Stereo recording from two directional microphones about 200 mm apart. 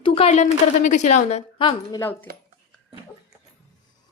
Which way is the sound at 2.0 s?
10° left (ahead or behind).